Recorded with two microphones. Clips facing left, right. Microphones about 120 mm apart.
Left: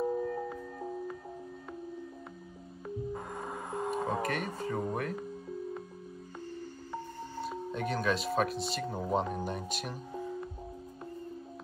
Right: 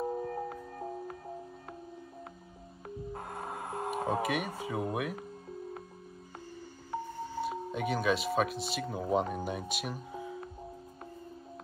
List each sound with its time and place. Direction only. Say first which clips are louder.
0.0 s music: left 2 dB; 20° right (ahead or behind)
0.5 s music: left 1 dB; 5° right (ahead or behind)
3.1 s a sound: left 1 dB; 5° right (ahead or behind)
6.5 s music: right 3 dB; 5° right (ahead or behind)